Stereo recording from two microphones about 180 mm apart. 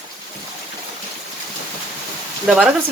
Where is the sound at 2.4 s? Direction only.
5° right (ahead or behind).